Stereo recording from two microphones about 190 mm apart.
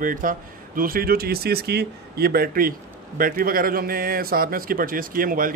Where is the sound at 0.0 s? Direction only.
45° right (ahead or behind).